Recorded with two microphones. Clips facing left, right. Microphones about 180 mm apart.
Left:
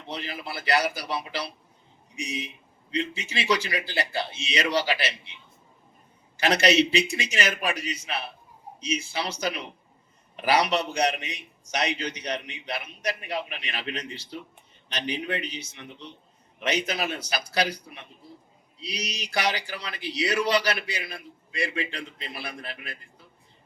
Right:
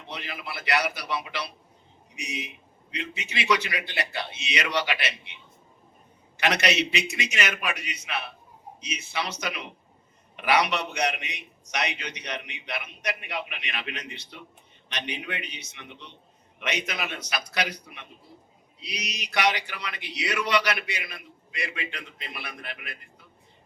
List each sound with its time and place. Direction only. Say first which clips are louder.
0.0 s a man's voice: left 3 dB; 30° left (ahead or behind)